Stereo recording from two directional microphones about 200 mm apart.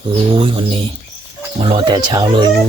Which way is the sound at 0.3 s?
25° right (ahead or behind).